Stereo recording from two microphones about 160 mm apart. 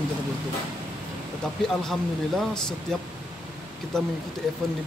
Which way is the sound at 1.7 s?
Centre (ahead or behind).